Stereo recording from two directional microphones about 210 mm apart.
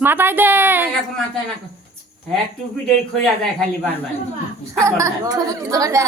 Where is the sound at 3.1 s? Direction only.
Centre (ahead or behind).